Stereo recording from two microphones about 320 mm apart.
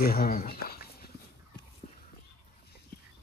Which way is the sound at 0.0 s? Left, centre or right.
Left.